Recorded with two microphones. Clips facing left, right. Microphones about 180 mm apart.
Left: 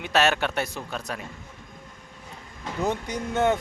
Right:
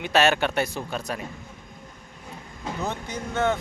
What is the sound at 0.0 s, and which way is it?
Speech, centre (ahead or behind).